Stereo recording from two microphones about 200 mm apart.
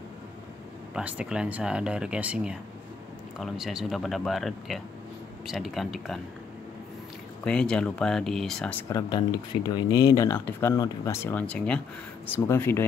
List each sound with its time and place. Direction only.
0.9 s speech: 5° right (ahead or behind)
7.4 s speech: 5° left (ahead or behind)
8.9 s speech: 20° left (ahead or behind)